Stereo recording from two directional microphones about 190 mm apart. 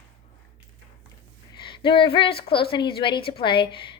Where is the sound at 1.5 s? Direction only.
25° left (ahead or behind).